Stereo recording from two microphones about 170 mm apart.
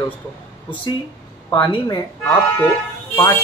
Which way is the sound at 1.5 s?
25° left (ahead or behind).